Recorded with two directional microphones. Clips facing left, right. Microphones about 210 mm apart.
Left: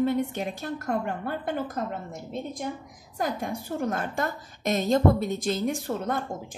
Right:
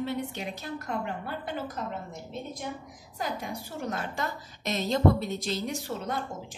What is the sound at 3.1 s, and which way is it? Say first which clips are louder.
A woman's voice: left 5 dB; 50° left (ahead or behind).